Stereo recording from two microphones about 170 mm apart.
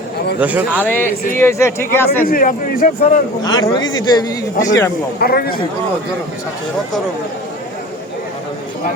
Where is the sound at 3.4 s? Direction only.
25° left (ahead or behind).